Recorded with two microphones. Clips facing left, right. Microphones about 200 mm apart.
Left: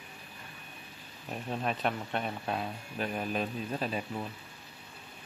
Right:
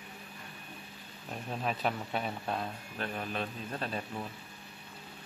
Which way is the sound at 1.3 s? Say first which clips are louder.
Left 2 dB; centre (ahead or behind).